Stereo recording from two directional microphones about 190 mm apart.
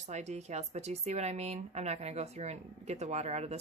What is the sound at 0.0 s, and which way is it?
Speech, 40° right (ahead or behind).